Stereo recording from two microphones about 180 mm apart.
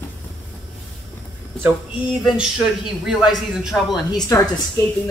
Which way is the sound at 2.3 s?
5° right (ahead or behind).